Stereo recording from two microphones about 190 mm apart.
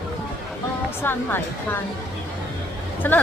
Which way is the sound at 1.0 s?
10° left (ahead or behind).